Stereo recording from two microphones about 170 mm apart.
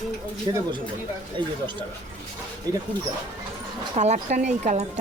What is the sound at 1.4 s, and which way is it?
Speech, 30° right (ahead or behind).